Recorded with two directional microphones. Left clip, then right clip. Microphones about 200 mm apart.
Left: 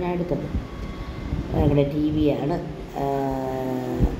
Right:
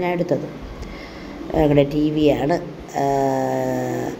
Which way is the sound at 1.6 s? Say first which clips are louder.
Right 5 dB; 30° right (ahead or behind).